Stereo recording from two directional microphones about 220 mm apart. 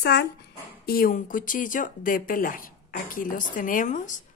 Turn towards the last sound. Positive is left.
turn(degrees=35)  # may be behind; listen again after turning